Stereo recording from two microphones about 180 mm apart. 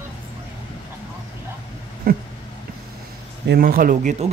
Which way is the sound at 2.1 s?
55° right (ahead or behind).